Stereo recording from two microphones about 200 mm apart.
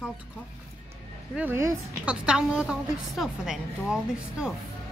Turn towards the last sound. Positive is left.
turn(degrees=-5)  # may be behind; listen again after turning